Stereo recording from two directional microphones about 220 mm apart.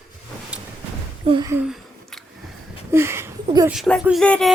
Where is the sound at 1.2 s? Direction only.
20° right (ahead or behind).